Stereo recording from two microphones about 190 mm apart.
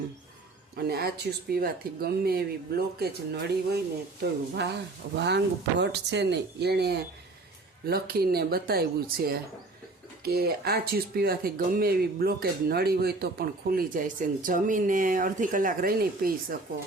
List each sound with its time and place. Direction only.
0.8 s speech: 55° right (ahead or behind)